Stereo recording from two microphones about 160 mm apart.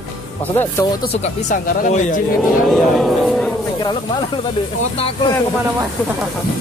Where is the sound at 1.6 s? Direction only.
60° left (ahead or behind).